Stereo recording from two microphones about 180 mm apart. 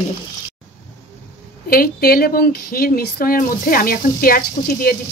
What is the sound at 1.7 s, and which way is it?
Speech, 55° left (ahead or behind).